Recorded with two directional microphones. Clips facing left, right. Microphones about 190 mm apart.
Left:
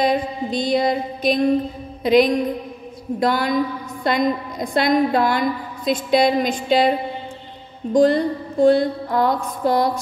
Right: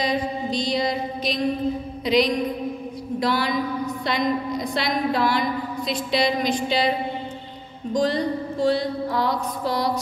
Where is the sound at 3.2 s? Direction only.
50° left (ahead or behind).